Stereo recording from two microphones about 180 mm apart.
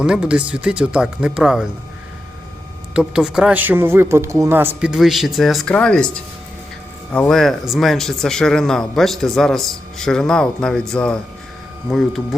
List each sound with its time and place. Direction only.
0.0 s speech: 5° right (ahead or behind)
2.9 s speech: 5° right (ahead or behind)